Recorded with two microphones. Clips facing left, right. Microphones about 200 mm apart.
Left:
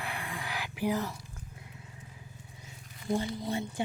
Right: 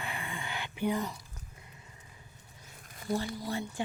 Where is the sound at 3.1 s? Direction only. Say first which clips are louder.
Left 2 dB; 20° left (ahead or behind).